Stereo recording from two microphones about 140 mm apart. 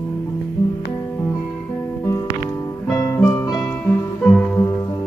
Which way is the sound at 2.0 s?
20° left (ahead or behind).